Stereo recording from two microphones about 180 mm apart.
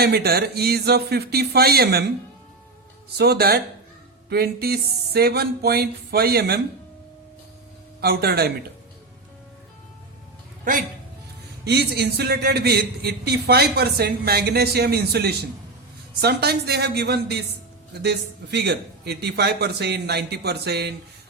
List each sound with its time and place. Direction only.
0.0 s a man's voice: 60° right (ahead or behind)
3.2 s a man's voice: 60° right (ahead or behind)
8.0 s a man's voice: 60° right (ahead or behind)
10.6 s speech: 50° right (ahead or behind)
11.6 s a man's voice: 65° right (ahead or behind)